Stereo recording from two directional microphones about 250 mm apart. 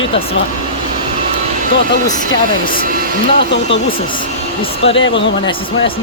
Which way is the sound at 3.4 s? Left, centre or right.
Left.